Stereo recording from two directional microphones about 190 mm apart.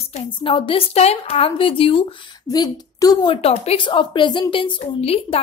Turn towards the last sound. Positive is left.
turn(degrees=30)  # may be behind; listen again after turning